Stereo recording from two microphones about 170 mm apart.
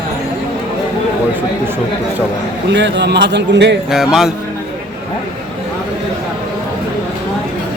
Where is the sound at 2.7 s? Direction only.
90° right.